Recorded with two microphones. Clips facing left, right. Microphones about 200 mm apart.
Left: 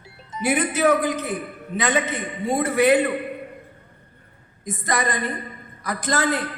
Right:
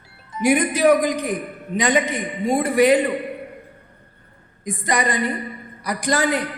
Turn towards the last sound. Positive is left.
turn(degrees=-15)  # may be behind; listen again after turning